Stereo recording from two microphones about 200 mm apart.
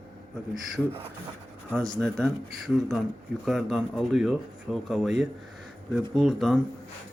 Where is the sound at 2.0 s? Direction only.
5° left (ahead or behind).